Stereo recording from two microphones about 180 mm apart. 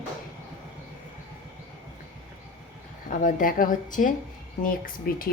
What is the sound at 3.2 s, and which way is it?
A woman's voice, 50° left (ahead or behind).